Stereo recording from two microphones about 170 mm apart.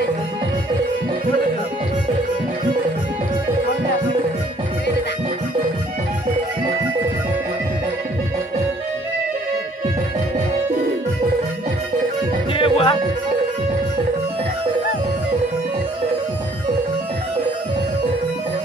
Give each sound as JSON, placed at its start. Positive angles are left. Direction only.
{"t": 12.5, "sound": "music", "side_deg": 30}